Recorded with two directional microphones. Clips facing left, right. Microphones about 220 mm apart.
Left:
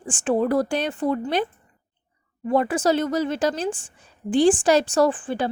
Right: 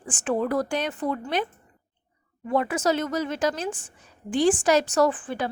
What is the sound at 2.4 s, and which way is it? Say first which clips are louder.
A woman's voice: left 3 dB; 35° left (ahead or behind).